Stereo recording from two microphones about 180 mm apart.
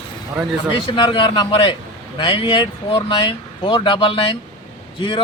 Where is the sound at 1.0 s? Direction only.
25° left (ahead or behind).